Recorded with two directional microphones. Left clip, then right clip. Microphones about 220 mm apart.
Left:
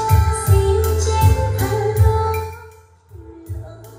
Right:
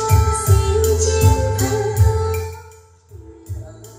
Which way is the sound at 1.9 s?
5° left (ahead or behind).